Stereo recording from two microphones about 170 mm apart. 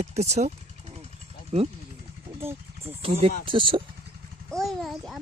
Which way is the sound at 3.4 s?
30° right (ahead or behind).